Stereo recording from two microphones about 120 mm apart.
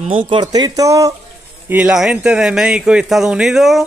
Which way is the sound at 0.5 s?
30° right (ahead or behind).